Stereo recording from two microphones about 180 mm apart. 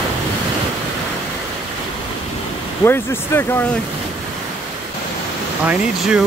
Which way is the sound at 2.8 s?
15° left (ahead or behind).